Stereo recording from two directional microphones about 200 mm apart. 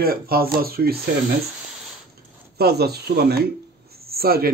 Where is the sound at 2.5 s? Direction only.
50° right (ahead or behind).